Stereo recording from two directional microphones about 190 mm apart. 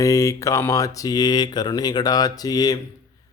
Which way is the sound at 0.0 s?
15° left (ahead or behind).